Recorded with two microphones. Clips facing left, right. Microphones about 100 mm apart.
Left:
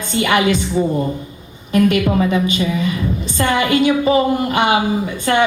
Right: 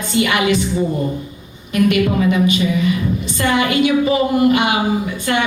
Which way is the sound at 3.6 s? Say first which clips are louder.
Even; 30° left (ahead or behind).